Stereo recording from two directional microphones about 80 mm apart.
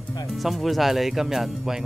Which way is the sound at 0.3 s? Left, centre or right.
Centre.